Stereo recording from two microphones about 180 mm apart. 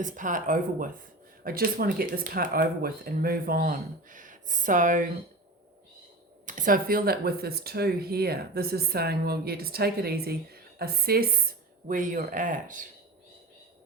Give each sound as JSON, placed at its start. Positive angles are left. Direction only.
{"t": 0.0, "sound": "speech", "side_deg": -45}
{"t": 6.4, "sound": "speech", "side_deg": -45}